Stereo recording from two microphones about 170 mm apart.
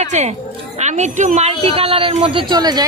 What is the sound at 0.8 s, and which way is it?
A woman's voice, 40° right (ahead or behind).